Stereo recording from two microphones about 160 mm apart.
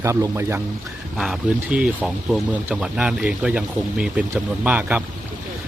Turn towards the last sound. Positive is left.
turn(degrees=-10)  # may be behind; listen again after turning